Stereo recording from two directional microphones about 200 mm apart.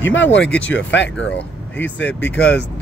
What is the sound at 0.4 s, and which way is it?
Speech, 5° left (ahead or behind).